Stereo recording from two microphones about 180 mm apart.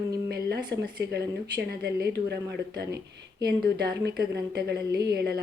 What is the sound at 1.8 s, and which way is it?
A woman's voice, 65° right (ahead or behind).